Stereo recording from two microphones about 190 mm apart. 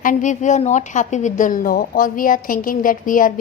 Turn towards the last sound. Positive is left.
turn(degrees=45)  # may be behind; listen again after turning